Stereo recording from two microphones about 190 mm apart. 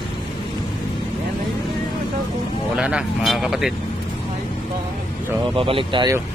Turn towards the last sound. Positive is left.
turn(degrees=-25)  # may be behind; listen again after turning